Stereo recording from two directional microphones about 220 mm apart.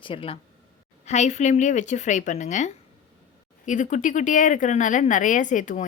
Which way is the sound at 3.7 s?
35° left (ahead or behind).